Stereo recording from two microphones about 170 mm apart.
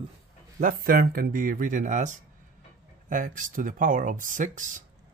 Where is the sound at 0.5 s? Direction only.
55° right (ahead or behind).